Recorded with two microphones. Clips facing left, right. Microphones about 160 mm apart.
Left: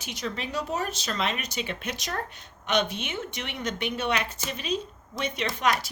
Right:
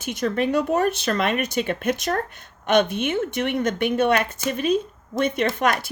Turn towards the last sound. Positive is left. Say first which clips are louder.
# right 5 dB
turn(degrees=-50)  # may be behind; listen again after turning